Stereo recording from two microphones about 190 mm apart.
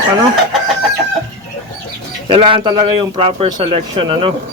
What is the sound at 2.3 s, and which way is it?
Speech, 25° right (ahead or behind).